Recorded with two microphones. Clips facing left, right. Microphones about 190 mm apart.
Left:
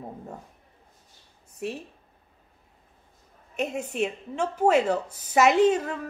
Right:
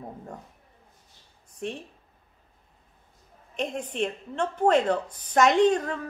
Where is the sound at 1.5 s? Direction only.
5° left (ahead or behind).